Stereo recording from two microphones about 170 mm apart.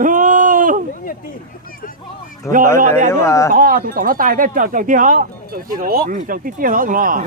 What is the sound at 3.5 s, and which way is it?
Speech, 55° right (ahead or behind).